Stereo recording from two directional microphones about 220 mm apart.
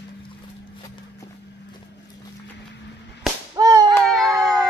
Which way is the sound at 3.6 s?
15° right (ahead or behind).